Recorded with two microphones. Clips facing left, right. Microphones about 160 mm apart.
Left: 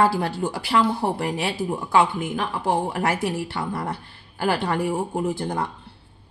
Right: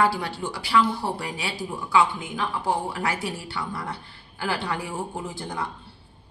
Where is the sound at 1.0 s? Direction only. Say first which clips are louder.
Left 6 dB; 50° left (ahead or behind).